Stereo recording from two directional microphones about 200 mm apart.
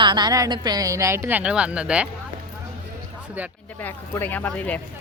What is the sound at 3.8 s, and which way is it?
Speech, 10° left (ahead or behind).